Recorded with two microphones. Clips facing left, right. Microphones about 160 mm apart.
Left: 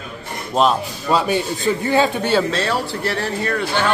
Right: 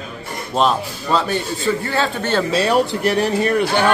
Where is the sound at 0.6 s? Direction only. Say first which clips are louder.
Left 1 dB; 5° left (ahead or behind).